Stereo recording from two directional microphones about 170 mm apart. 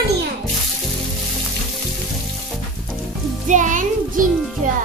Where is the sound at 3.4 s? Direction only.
50° right (ahead or behind).